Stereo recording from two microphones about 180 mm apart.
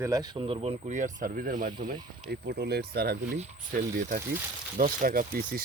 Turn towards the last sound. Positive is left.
turn(degrees=-50)  # may be behind; listen again after turning